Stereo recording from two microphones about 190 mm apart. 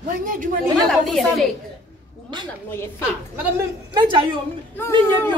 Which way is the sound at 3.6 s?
25° right (ahead or behind).